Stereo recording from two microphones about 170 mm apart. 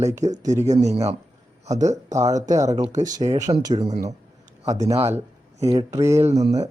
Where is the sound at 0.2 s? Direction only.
45° right (ahead or behind).